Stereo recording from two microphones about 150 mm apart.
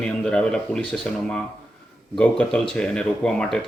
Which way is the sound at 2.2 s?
5° left (ahead or behind).